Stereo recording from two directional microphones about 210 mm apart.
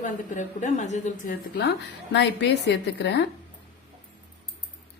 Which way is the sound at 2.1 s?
55° left (ahead or behind).